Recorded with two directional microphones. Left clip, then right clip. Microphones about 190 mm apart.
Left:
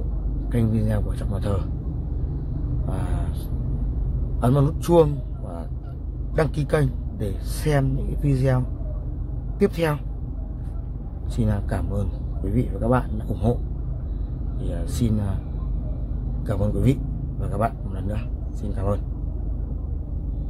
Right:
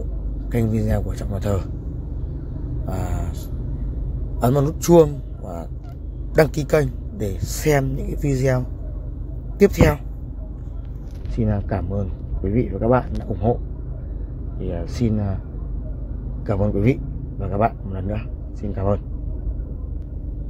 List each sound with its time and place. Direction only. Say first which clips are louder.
0.5 s speech: right 3 dB; 20° right (ahead or behind)
2.9 s speech: right 4 dB; 20° right (ahead or behind)
4.4 s a man's voice: right 3 dB; 15° right (ahead or behind)
6.3 s speech: right 7 dB; 30° right (ahead or behind)
6.6 s speech: right 4 dB; 15° right (ahead or behind)
11.3 s speech: right 3 dB; 10° right (ahead or behind)
13.3 s speech: right 4 dB; centre (ahead or behind)
14.7 s speech: right 3 dB; 15° right (ahead or behind)
16.4 s a man's voice: right 4 dB; 10° right (ahead or behind)